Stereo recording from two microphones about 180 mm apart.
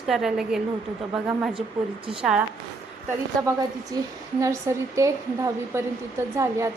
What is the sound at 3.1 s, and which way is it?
A woman's voice, 20° right (ahead or behind).